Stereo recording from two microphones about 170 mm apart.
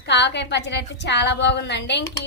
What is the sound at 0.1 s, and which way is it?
A woman's voice, 90° left.